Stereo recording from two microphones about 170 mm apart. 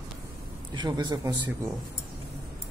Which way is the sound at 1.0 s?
15° right (ahead or behind).